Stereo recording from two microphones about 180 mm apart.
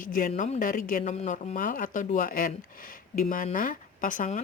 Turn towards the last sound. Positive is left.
turn(degrees=45)  # may be behind; listen again after turning